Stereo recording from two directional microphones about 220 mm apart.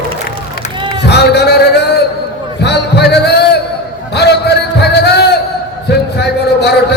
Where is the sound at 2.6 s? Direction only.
50° left (ahead or behind).